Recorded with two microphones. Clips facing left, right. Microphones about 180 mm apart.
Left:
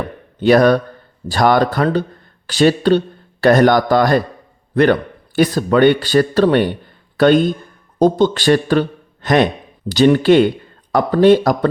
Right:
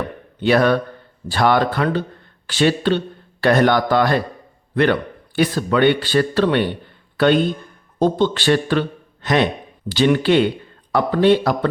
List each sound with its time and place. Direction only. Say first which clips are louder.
0.4 s a man's voice: left 4 dB; 40° left (ahead or behind)